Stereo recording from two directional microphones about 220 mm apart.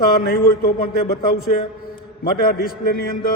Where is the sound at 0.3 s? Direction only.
45° left (ahead or behind).